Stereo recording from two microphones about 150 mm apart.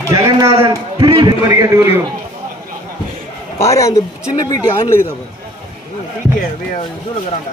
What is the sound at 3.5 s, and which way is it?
Speech, 20° left (ahead or behind).